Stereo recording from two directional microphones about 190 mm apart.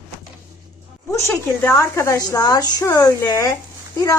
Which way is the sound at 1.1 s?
10° left (ahead or behind).